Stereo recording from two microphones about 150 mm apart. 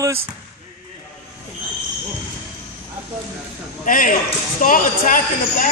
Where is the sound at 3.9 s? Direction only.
65° left (ahead or behind).